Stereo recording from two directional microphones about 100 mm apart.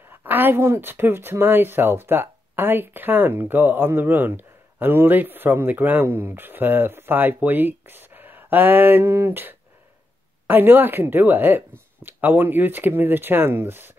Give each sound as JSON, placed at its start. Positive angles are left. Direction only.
{"t": 0.2, "sound": "speech", "side_deg": -20}